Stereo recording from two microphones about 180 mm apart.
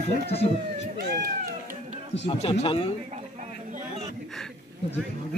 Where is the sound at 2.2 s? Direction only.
35° left (ahead or behind).